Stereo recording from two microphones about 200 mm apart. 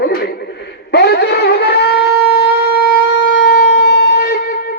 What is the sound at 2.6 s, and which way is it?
Shofar, 55° left (ahead or behind).